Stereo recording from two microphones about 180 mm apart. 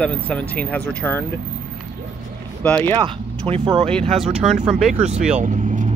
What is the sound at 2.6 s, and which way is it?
Speech, 10° left (ahead or behind).